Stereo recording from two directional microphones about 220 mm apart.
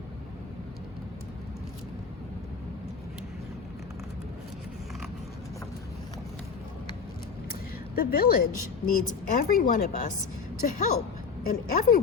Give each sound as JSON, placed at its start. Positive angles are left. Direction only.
{"t": 7.9, "sound": "a woman's voice", "side_deg": 40}